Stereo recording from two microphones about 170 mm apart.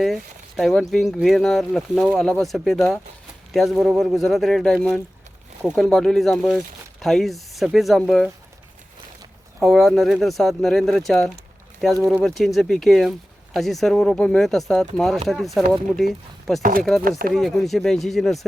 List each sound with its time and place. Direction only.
0.0 s speech: centre (ahead or behind)
9.6 s speech: centre (ahead or behind)
17.0 s speech: 55° right (ahead or behind)
17.3 s speech: centre (ahead or behind)